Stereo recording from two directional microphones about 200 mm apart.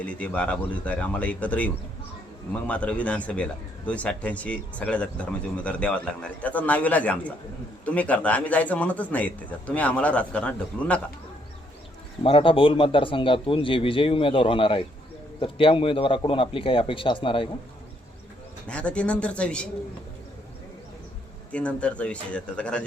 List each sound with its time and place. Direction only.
0.0 s speech: 5° left (ahead or behind)
12.2 s a man's voice: 25° left (ahead or behind)
18.7 s speech: 5° left (ahead or behind)
21.5 s speech: 5° left (ahead or behind)